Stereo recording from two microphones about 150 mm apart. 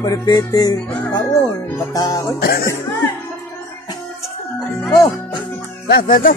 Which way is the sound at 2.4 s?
90° left.